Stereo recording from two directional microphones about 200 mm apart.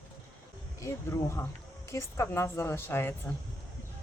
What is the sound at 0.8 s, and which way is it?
A woman's voice, 15° left (ahead or behind).